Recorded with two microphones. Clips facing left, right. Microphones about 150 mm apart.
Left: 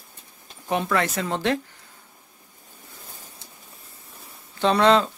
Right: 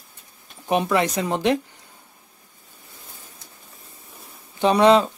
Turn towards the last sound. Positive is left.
turn(degrees=-15)  # may be behind; listen again after turning